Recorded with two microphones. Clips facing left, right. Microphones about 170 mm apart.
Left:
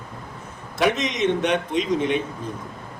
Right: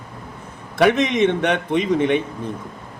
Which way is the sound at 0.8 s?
60° right (ahead or behind).